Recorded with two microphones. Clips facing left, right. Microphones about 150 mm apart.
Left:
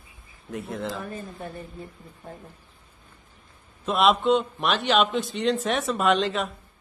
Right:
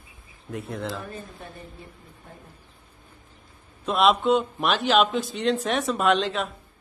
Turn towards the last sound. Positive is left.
turn(degrees=0)  # may be behind; listen again after turning